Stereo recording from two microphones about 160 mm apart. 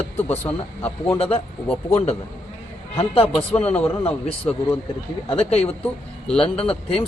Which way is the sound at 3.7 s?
10° left (ahead or behind).